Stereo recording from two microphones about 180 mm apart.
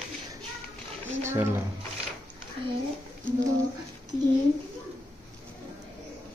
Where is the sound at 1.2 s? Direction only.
15° right (ahead or behind).